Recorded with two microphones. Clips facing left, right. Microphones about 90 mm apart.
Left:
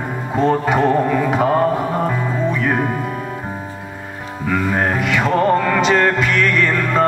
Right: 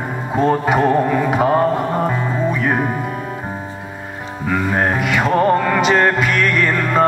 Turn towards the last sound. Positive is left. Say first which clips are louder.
# right 1 dB
turn(degrees=-15)  # may be behind; listen again after turning